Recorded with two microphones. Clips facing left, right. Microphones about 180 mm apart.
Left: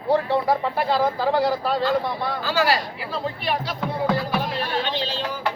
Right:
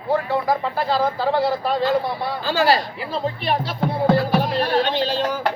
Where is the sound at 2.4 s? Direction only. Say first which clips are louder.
Right 4 dB; 25° right (ahead or behind).